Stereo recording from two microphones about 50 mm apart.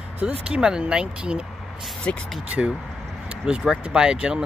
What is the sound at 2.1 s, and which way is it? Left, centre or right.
Speech, left.